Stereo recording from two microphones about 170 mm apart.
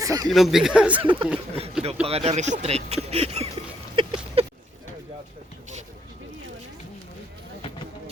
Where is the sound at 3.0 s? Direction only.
35° right (ahead or behind).